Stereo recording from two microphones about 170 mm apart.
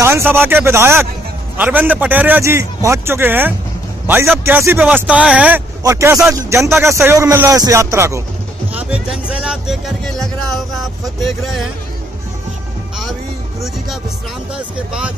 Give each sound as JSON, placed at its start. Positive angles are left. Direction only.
{"t": 0.0, "sound": "a man's voice", "side_deg": -15}
{"t": 5.9, "sound": "a man's voice", "side_deg": -20}
{"t": 14.5, "sound": "speech", "side_deg": -5}